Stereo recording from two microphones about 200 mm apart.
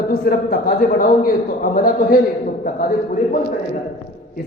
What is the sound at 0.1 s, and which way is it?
A man's voice, 50° left (ahead or behind).